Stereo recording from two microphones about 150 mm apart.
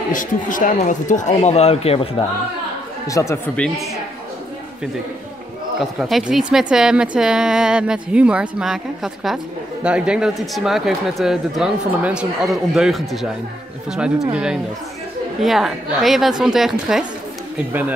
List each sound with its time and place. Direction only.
0.1 s speech: 60° left (ahead or behind); by 2.0 s 40° left (ahead or behind)
3.1 s speech: 20° left (ahead or behind)
3.5 s a woman's voice: 5° left (ahead or behind)
5.8 s a woman's voice: centre (ahead or behind)